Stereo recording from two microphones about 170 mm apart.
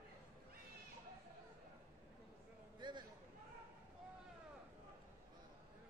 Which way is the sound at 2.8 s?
25° right (ahead or behind).